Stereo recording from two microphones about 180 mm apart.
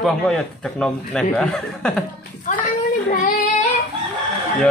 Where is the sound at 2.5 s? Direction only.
45° left (ahead or behind).